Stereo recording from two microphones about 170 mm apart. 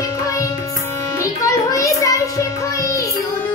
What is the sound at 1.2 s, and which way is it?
Child singing, 20° left (ahead or behind).